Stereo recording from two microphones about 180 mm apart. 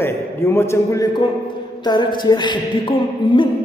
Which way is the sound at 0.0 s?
15° left (ahead or behind).